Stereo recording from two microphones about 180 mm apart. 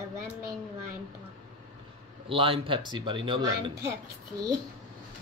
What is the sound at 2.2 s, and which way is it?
Speech, 30° right (ahead or behind).